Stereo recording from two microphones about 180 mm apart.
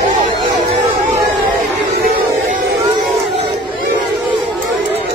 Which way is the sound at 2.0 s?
55° right (ahead or behind).